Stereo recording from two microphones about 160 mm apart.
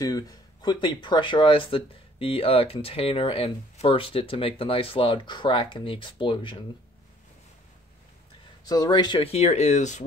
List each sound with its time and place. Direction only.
0.0 s speech: 25° left (ahead or behind)
8.6 s speech: 20° left (ahead or behind); by 10.0 s 45° left (ahead or behind)